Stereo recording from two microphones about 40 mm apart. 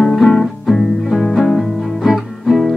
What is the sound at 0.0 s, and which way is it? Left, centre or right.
Music, centre.